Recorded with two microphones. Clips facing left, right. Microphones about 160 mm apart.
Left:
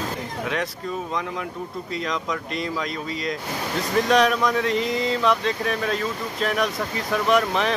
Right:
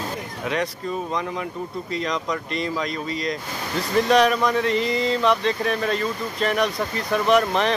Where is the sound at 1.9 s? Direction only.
Centre (ahead or behind).